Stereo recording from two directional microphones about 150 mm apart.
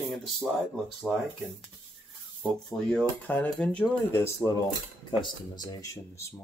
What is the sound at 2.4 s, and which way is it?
Speech, 5° left (ahead or behind).